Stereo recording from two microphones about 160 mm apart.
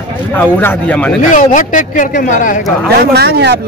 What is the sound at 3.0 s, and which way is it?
Speech, 85° right.